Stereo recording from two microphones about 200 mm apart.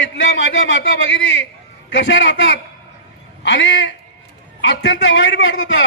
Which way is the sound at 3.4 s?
65° left (ahead or behind).